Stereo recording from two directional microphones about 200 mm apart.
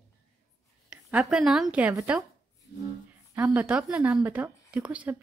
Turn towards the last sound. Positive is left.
turn(degrees=-5)  # may be behind; listen again after turning